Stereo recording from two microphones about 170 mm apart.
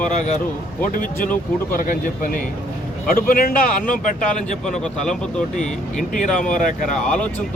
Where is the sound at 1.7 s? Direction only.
55° left (ahead or behind).